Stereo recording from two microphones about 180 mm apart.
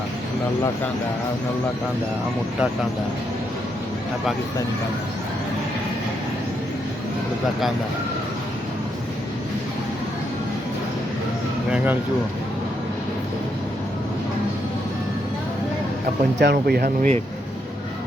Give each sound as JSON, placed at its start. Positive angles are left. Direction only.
{"t": 16.4, "sound": "speech", "side_deg": -65}